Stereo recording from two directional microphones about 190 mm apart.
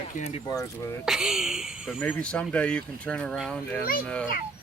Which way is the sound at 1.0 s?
Centre (ahead or behind).